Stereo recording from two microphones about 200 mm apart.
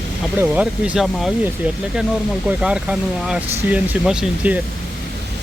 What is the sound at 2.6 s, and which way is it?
Speech, 5° right (ahead or behind).